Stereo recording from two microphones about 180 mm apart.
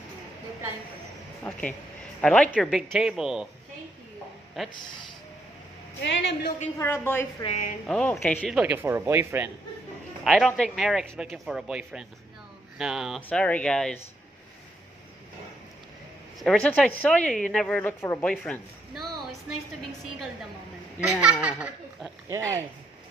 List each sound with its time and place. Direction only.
1.4 s a woman's voice: 10° left (ahead or behind)
4.6 s speech: centre (ahead or behind)
5.9 s a woman's voice: 75° left (ahead or behind)
6.8 s speech: 15° left (ahead or behind)
7.4 s a woman's voice: 40° left (ahead or behind)
7.9 s speech: 5° left (ahead or behind)
8.4 s speech: 5° right (ahead or behind)
10.2 s a woman's voice: centre (ahead or behind)
16.4 s a woman's voice: 5° left (ahead or behind)
21.5 s speech: 10° right (ahead or behind)